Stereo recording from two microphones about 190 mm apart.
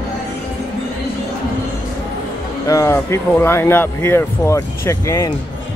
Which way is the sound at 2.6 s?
15° left (ahead or behind).